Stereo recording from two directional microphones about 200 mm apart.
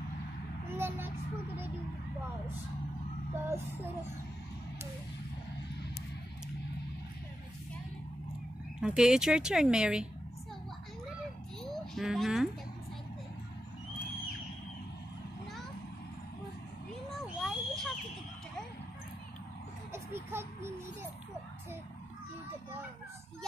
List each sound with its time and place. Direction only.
0.7 s vehicle: 10° right (ahead or behind)
3.4 s speech: 15° right (ahead or behind)
8.8 s speech: 5° right (ahead or behind)
11.6 s a sound: centre (ahead or behind)
17.1 s owl: centre (ahead or behind)
19.9 s a sound: 10° right (ahead or behind)